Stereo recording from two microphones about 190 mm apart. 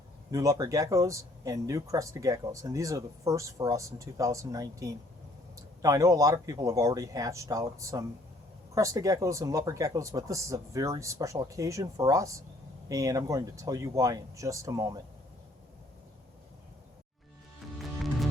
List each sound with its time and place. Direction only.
0.3 s speech: 15° right (ahead or behind)
17.7 s music: centre (ahead or behind)